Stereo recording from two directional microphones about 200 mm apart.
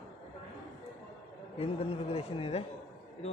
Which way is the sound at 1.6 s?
30° left (ahead or behind).